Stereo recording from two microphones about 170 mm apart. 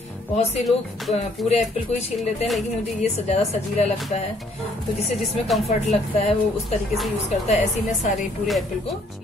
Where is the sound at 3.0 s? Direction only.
40° left (ahead or behind).